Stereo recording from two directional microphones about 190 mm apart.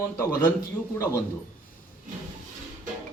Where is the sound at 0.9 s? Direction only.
15° left (ahead or behind).